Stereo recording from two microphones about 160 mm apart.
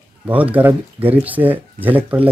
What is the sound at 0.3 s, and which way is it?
Speech, 10° right (ahead or behind).